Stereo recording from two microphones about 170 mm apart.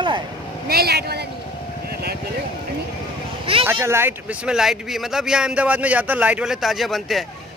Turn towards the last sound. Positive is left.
turn(degrees=0)  # may be behind; listen again after turning